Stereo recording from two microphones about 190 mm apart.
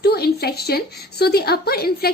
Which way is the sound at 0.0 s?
55° left (ahead or behind).